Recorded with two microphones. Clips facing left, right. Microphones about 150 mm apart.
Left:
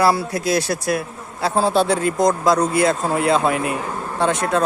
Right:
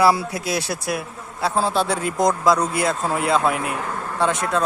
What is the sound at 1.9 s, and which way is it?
Speech, 10° right (ahead or behind).